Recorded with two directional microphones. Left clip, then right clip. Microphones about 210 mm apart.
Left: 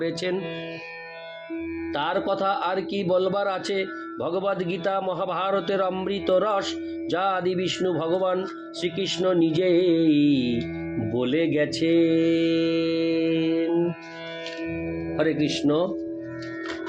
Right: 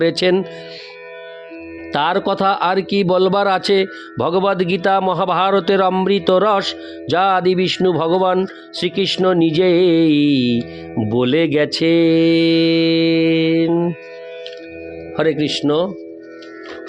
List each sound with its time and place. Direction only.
0.0 s speech: 55° right (ahead or behind)
1.9 s speech: 55° right (ahead or behind)
11.1 s mantra: 55° right (ahead or behind)
15.1 s speech: 50° right (ahead or behind)